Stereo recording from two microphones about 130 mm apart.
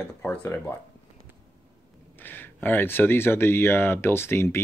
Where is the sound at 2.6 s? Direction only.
15° left (ahead or behind).